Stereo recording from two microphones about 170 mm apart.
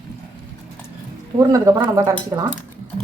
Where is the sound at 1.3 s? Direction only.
20° right (ahead or behind).